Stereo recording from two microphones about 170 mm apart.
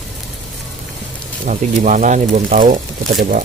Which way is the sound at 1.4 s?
45° right (ahead or behind).